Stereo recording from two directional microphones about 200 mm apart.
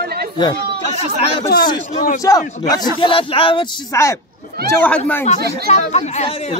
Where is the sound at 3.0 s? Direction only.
25° left (ahead or behind); by 5.2 s 5° left (ahead or behind).